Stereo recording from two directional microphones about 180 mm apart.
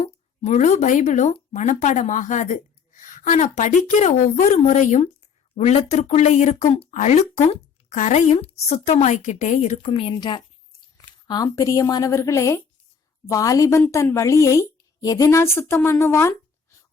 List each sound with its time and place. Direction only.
0.0 s a woman's voice: 40° left (ahead or behind)
9.9 s a woman's voice: 30° left (ahead or behind)